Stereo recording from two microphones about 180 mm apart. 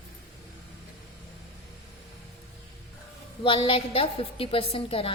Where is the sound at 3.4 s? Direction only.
30° left (ahead or behind).